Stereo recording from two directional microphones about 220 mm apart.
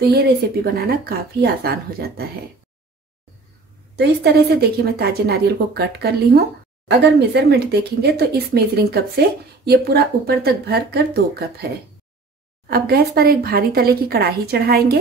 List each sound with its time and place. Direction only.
0.7 s a woman's voice: 45° right (ahead or behind)
3.9 s a woman's voice: 50° right (ahead or behind)
12.6 s a woman's voice: 45° right (ahead or behind)